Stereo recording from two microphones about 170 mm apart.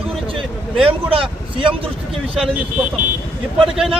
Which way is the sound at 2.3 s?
5° right (ahead or behind).